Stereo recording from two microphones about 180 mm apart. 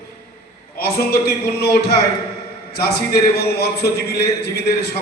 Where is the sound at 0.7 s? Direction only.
60° left (ahead or behind).